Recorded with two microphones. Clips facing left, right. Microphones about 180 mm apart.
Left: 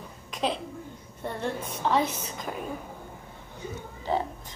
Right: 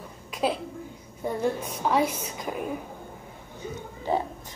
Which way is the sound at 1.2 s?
10° right (ahead or behind).